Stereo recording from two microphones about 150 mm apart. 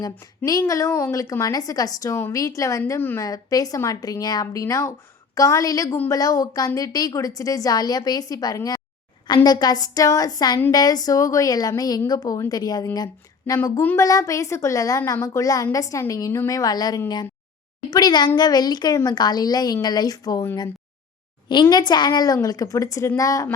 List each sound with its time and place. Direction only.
0.0 s a woman's voice: 25° left (ahead or behind)